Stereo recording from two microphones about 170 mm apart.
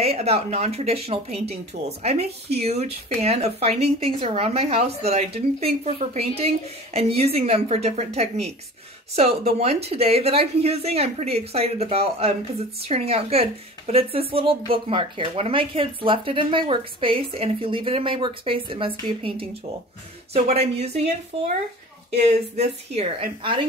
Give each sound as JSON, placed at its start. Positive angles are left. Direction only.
{"t": 0.0, "sound": "a woman's voice", "side_deg": -35}